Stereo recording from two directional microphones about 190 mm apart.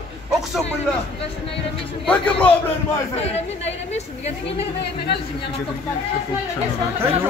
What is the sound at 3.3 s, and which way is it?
Speech, 35° left (ahead or behind).